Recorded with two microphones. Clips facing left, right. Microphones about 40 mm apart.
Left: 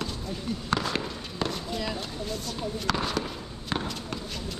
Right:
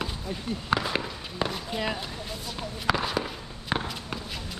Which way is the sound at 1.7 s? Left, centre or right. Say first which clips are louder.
Right 2 dB; right.